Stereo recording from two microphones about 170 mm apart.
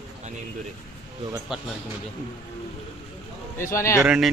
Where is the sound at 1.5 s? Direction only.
Centre (ahead or behind).